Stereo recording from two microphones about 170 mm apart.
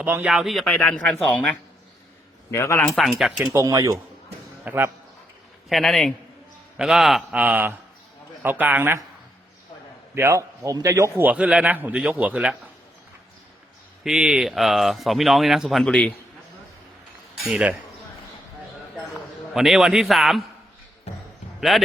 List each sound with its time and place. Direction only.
0.0 s speech: 10° right (ahead or behind); by 2.8 s 15° left (ahead or behind)
2.8 s speech: centre (ahead or behind)
3.4 s a man's voice: 15° right (ahead or behind)
5.6 s a man's voice: centre (ahead or behind)
10.2 s a man's voice: 15° right (ahead or behind)
11.2 s a man's voice: 10° right (ahead or behind)
14.0 s speech: 5° right (ahead or behind)
17.4 s speech: 5° right (ahead or behind)
19.5 s speech: centre (ahead or behind)
21.7 s speech: centre (ahead or behind)